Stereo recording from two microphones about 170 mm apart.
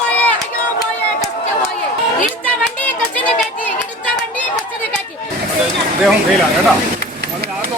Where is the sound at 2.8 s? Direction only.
10° left (ahead or behind).